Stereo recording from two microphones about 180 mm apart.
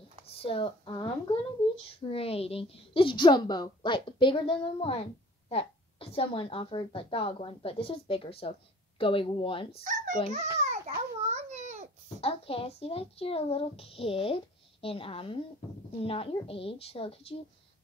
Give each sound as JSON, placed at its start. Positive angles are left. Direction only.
{"t": 0.4, "sound": "a woman's voice", "side_deg": 30}
{"t": 9.8, "sound": "a child's voice", "side_deg": -45}
{"t": 11.0, "sound": "a sound", "side_deg": -40}
{"t": 12.2, "sound": "speech", "side_deg": 30}